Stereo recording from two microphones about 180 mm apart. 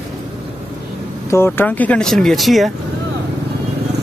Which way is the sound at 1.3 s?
10° left (ahead or behind).